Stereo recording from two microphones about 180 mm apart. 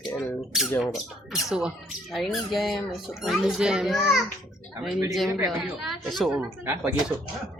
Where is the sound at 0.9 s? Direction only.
Centre (ahead or behind).